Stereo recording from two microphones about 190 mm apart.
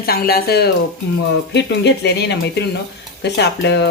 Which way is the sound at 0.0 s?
55° left (ahead or behind).